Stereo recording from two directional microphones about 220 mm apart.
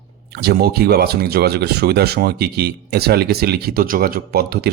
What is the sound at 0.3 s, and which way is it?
Speech, 45° right (ahead or behind).